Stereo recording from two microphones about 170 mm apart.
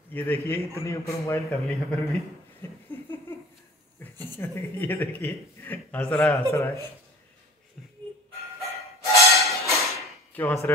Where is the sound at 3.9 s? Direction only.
15° left (ahead or behind).